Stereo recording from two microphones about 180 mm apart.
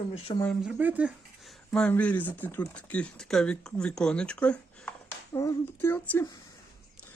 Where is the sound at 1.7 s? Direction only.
5° left (ahead or behind).